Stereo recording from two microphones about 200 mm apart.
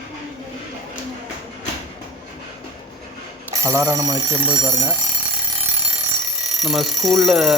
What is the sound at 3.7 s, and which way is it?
Speech, 15° right (ahead or behind).